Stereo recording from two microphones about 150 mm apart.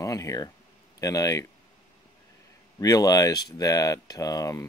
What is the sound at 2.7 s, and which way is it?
Speech, 25° left (ahead or behind).